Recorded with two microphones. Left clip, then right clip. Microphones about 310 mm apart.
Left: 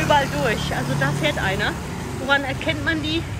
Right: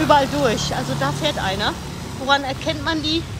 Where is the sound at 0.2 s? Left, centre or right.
Centre.